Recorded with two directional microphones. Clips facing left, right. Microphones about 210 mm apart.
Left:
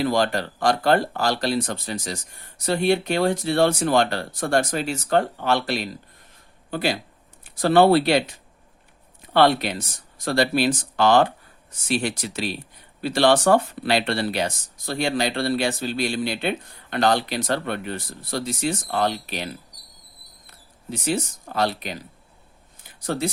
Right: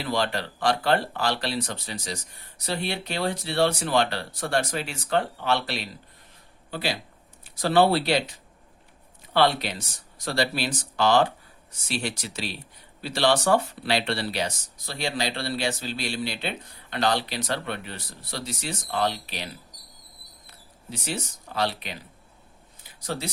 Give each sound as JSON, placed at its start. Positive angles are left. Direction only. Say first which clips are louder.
{"t": 0.0, "sound": "speech", "louder": "left 6 dB", "side_deg": 45}
{"t": 20.9, "sound": "speech", "louder": "left 7 dB", "side_deg": 50}
{"t": 22.8, "sound": "a sound", "louder": "left 6 dB", "side_deg": 50}